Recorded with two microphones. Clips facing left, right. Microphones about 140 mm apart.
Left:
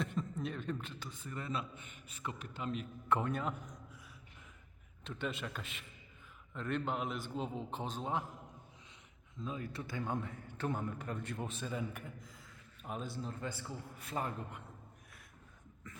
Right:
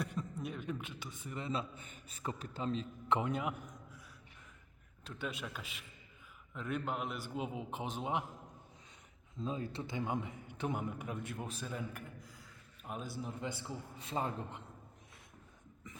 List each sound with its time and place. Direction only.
0.2 s a man's voice: 10° right (ahead or behind)
1.7 s a man's voice: 35° right (ahead or behind)
3.1 s a man's voice: 15° right (ahead or behind)
5.0 s a man's voice: 5° right (ahead or behind)
9.4 s a man's voice: 30° right (ahead or behind)